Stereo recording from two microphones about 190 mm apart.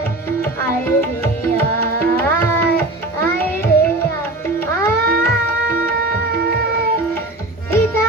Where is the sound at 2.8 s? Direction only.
10° left (ahead or behind).